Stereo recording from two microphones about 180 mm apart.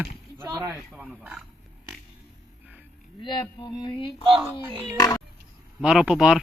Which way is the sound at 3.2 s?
25° left (ahead or behind).